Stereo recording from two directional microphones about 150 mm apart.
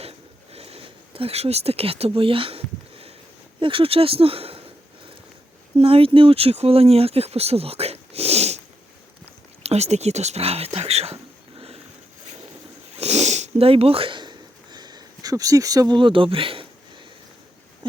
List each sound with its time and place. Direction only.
0.5 s a sound: 40° right (ahead or behind)
3.6 s speech: 35° right (ahead or behind)
5.7 s speech: 40° right (ahead or behind)
9.6 s speech: 45° right (ahead or behind)
13.0 s sniff: 45° right (ahead or behind)